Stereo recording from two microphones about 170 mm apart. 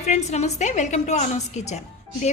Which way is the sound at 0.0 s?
40° left (ahead or behind).